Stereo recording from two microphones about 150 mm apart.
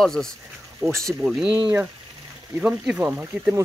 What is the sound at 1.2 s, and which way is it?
Speech, centre (ahead or behind).